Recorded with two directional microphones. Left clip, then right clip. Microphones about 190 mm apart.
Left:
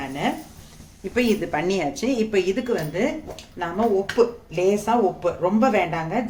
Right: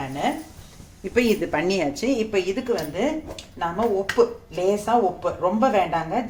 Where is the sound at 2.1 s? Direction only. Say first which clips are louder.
Left 2 dB; 20° left (ahead or behind).